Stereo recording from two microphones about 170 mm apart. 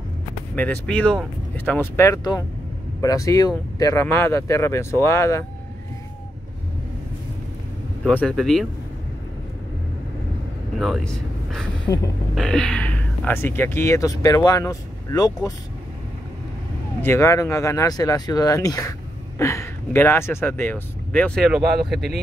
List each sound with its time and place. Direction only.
0.6 s speech: 10° left (ahead or behind)
8.0 s speech: 5° left (ahead or behind)
10.8 s speech: centre (ahead or behind); by 15.5 s 20° left (ahead or behind)
17.0 s speech: 15° left (ahead or behind)
21.5 s speech: centre (ahead or behind)